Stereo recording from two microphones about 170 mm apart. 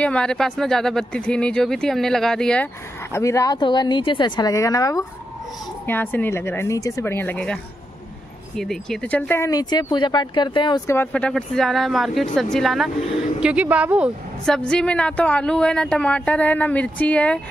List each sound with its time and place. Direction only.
0.0 s speech: 5° left (ahead or behind); by 10.8 s 25° left (ahead or behind)
10.9 s speech: 10° left (ahead or behind); by 14.1 s 5° right (ahead or behind)
14.4 s speech: 5° left (ahead or behind)